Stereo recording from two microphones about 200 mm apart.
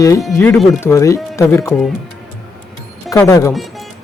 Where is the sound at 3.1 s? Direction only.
15° left (ahead or behind).